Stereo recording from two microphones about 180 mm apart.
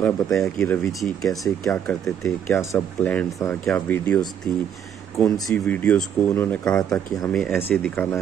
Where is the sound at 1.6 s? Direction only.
15° left (ahead or behind).